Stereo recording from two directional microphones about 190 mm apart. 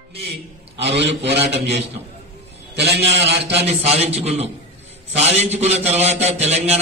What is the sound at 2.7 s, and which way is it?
Speech, 60° right (ahead or behind).